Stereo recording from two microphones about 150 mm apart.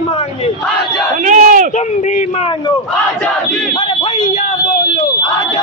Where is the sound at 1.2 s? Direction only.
60° right (ahead or behind).